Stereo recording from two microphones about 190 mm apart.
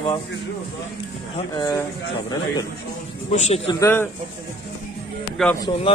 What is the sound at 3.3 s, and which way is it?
Speech, 35° left (ahead or behind).